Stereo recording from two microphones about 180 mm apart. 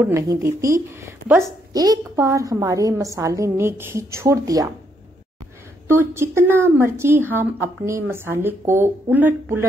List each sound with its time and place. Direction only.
0.0 s a woman's voice: 15° right (ahead or behind)
5.9 s a woman's voice: 15° right (ahead or behind)